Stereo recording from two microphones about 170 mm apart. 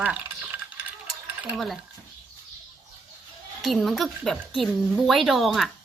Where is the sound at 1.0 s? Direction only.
Centre (ahead or behind).